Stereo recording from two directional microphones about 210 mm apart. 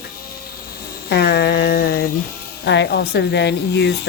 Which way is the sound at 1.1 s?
50° left (ahead or behind).